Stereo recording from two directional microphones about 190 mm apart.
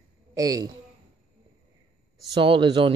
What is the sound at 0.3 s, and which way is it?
Speech, 20° right (ahead or behind).